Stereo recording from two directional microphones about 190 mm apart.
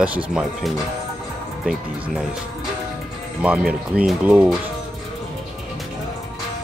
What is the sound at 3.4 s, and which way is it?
Speech, 5° right (ahead or behind).